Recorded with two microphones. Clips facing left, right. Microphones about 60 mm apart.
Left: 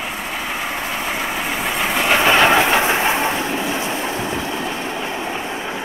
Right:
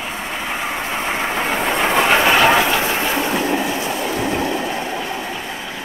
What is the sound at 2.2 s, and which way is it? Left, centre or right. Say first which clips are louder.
Train: left 3 dB; left.